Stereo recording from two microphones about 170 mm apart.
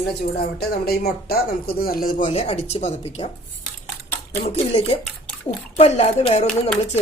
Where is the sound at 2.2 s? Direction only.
35° left (ahead or behind).